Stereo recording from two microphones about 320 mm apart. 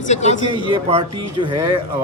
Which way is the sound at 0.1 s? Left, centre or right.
Left.